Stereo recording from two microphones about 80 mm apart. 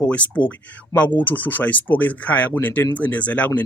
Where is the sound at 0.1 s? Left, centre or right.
Centre.